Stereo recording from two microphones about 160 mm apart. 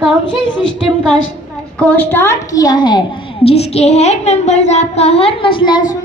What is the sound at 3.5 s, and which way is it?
Child singing, 40° left (ahead or behind).